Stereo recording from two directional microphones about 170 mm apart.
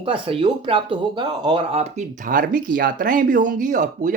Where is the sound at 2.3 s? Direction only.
55° right (ahead or behind).